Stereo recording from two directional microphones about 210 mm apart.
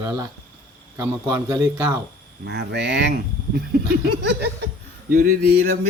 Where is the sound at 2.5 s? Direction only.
55° right (ahead or behind).